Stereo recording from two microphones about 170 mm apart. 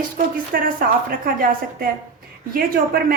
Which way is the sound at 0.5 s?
60° right (ahead or behind).